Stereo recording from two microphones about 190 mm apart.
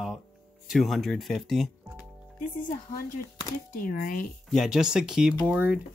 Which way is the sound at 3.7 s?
50° left (ahead or behind).